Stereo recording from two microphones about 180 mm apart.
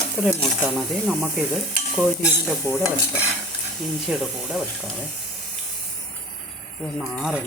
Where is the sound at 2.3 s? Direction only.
10° right (ahead or behind).